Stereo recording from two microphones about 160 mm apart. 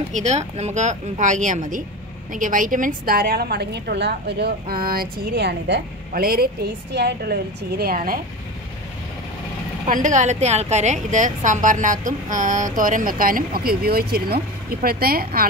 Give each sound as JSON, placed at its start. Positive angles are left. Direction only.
{"t": 0.1, "sound": "a woman's voice", "side_deg": -45}
{"t": 9.8, "sound": "a woman's voice", "side_deg": -55}